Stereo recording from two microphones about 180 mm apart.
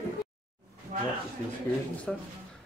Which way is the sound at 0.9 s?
45° right (ahead or behind).